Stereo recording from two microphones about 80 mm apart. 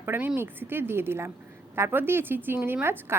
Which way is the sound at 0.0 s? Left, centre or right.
Right.